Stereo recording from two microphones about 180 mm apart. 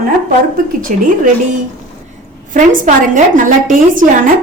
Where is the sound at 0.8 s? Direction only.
50° right (ahead or behind).